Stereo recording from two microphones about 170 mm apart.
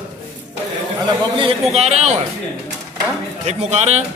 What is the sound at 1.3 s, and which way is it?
Speech, 35° right (ahead or behind).